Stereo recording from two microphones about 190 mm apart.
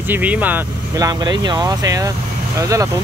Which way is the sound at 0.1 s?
10° right (ahead or behind).